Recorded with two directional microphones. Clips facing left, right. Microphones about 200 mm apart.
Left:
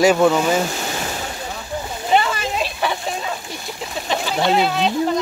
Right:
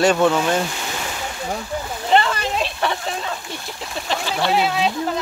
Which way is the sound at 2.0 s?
5° left (ahead or behind).